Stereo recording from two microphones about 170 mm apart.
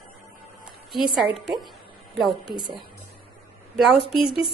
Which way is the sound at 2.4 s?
25° right (ahead or behind).